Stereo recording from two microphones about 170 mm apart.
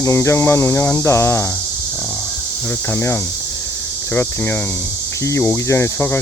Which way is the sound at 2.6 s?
15° left (ahead or behind).